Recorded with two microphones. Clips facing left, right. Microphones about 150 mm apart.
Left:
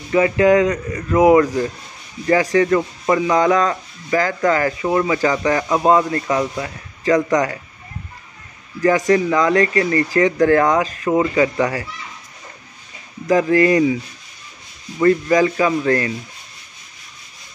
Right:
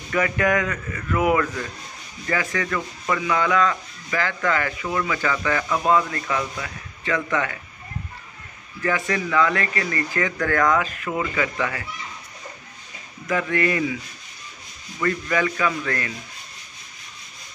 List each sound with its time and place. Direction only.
0.1 s speech: 25° left (ahead or behind)
8.8 s speech: 40° left (ahead or behind)
13.3 s speech: 35° left (ahead or behind)
15.0 s speech: 35° left (ahead or behind)